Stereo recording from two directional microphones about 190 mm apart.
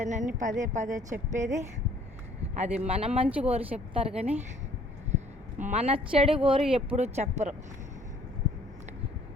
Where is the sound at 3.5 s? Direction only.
30° right (ahead or behind).